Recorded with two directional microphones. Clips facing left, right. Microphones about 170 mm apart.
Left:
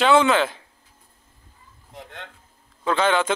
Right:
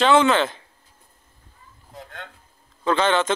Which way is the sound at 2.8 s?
10° left (ahead or behind).